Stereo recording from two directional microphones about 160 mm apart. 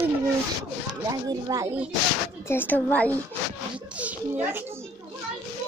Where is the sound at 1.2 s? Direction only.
20° right (ahead or behind).